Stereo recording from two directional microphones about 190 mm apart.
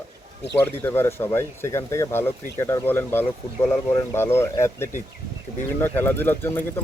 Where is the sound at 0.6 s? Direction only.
10° left (ahead or behind).